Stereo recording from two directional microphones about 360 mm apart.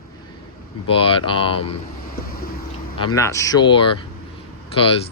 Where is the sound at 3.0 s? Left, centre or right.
Centre.